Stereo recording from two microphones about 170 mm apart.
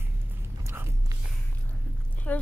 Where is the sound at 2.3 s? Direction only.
10° left (ahead or behind).